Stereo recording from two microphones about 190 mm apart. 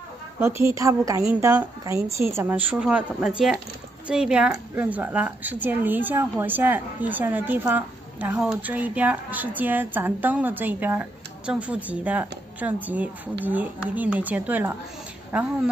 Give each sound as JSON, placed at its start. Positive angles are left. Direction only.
{"t": 0.4, "sound": "a woman's voice", "side_deg": -15}